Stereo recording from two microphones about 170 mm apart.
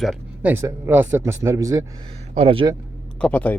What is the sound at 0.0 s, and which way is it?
Speech, centre (ahead or behind).